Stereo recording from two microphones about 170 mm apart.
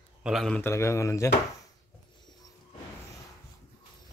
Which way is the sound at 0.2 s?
Centre (ahead or behind).